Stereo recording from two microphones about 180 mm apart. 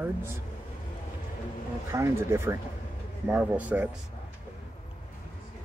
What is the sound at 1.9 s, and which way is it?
Speech, 15° right (ahead or behind).